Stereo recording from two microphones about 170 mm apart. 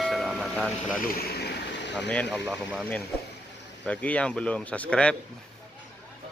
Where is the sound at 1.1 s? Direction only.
65° left (ahead or behind); by 1.9 s 85° left.